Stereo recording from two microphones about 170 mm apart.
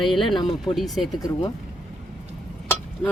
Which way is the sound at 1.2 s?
20° left (ahead or behind).